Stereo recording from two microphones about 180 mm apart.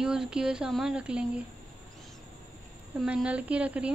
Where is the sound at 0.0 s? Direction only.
5° right (ahead or behind).